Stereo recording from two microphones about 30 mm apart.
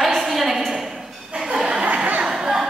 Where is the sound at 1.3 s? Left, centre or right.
Centre.